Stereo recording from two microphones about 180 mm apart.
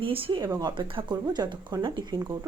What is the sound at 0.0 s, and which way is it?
A woman's voice, 30° right (ahead or behind).